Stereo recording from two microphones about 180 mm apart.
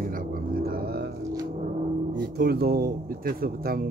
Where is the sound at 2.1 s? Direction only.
60° right (ahead or behind).